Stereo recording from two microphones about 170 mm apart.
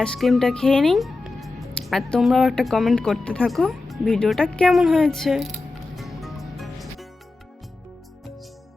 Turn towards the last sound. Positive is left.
turn(degrees=0)  # may be behind; listen again after turning